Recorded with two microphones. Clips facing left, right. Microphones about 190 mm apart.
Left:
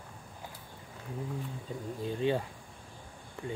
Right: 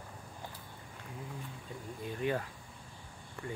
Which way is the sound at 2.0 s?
25° left (ahead or behind).